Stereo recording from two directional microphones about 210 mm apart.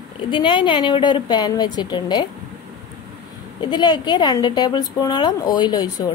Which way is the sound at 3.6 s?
20° left (ahead or behind).